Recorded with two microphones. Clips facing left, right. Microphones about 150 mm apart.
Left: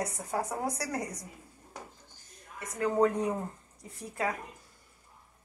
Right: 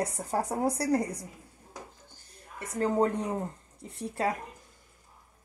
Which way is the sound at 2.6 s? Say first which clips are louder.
Even; 30° right (ahead or behind).